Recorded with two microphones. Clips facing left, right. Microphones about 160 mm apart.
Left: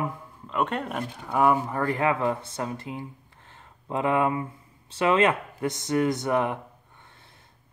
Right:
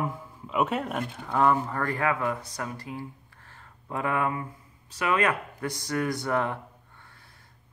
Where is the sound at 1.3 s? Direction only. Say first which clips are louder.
Left 1 dB; 10° left (ahead or behind).